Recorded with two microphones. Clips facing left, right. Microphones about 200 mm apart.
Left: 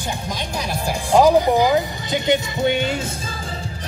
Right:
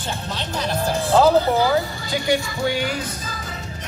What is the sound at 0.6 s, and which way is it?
Speech, 10° left (ahead or behind).